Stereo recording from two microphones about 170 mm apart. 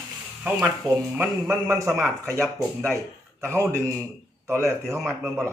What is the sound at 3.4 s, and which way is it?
Speech, 15° right (ahead or behind).